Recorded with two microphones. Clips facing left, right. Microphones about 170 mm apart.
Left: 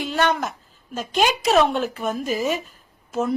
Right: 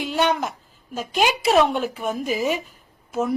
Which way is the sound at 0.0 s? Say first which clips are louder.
Even; 15° right (ahead or behind).